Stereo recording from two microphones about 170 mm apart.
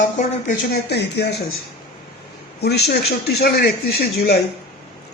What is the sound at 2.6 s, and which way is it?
Speech, 75° left (ahead or behind).